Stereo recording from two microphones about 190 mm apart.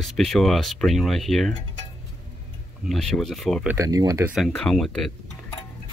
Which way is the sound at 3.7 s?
20° right (ahead or behind).